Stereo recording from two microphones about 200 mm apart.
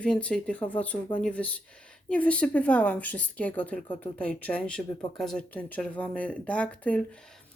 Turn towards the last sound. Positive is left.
turn(degrees=5)  # may be behind; listen again after turning